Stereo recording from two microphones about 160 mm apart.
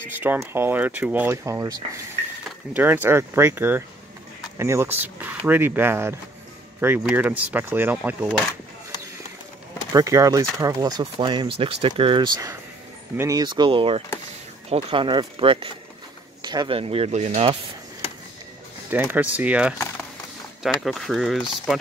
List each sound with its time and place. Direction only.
0.2 s speech: 15° right (ahead or behind)
9.9 s speech: 20° right (ahead or behind); by 17.6 s 40° right (ahead or behind)
18.9 s speech: 10° right (ahead or behind)